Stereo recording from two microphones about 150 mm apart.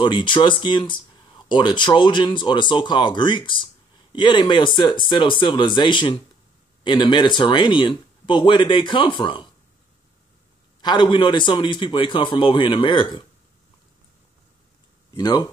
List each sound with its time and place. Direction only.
0.0 s speech: 30° left (ahead or behind)
10.8 s speech: 30° left (ahead or behind)
15.1 s speech: 25° left (ahead or behind)